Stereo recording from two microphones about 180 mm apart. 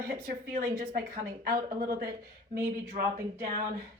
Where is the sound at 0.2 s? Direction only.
50° right (ahead or behind).